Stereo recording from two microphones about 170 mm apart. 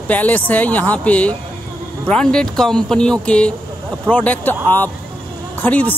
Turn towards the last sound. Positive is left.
turn(degrees=10)  # may be behind; listen again after turning